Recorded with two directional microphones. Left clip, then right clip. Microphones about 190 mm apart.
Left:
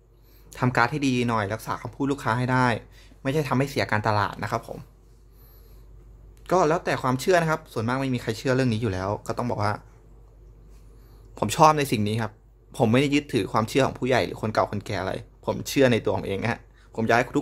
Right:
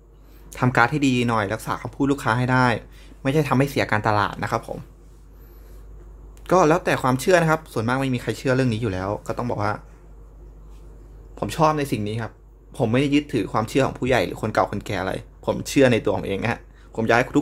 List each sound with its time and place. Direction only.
0.5 s speech: centre (ahead or behind)
6.4 s speech: centre (ahead or behind)
11.3 s speech: 30° left (ahead or behind); by 17.4 s 5° left (ahead or behind)